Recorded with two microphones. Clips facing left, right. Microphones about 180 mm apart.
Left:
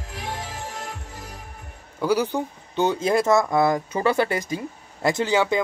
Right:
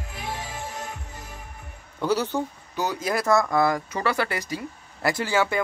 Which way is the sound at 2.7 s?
25° left (ahead or behind).